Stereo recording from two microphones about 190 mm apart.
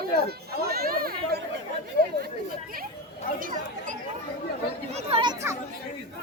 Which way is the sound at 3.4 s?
45° right (ahead or behind).